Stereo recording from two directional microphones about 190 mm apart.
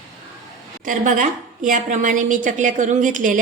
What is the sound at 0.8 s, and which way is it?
A woman's voice, 45° right (ahead or behind).